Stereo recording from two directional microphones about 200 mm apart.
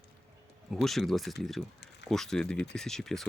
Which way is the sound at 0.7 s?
Centre (ahead or behind).